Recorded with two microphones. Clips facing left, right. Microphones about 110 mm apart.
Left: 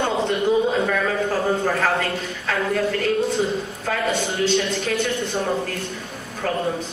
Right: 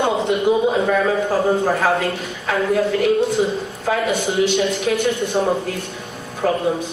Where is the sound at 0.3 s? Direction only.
15° right (ahead or behind).